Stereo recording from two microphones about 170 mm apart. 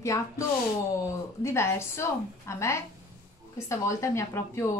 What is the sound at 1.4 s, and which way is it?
Speech, 15° left (ahead or behind).